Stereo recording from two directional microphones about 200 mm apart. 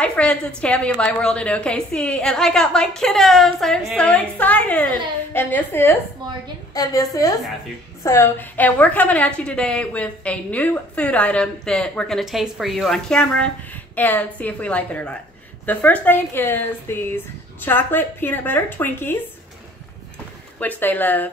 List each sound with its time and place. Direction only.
0.0 s a woman's voice: 5° left (ahead or behind)
20.5 s speech: 10° left (ahead or behind)